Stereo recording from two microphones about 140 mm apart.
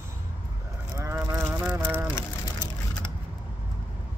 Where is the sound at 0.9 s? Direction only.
20° right (ahead or behind).